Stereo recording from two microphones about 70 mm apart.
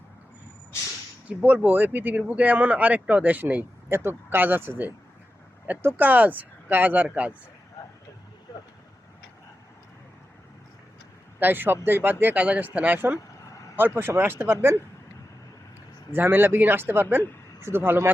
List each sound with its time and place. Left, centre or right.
1.3 s speech: right
3.8 s speech: right
6.0 s speech: right
11.3 s a man's voice: right
13.1 s vehicle: left
13.9 s speech: right
16.1 s speech: right